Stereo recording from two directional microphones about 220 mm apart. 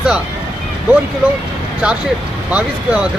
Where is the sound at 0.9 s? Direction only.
5° right (ahead or behind).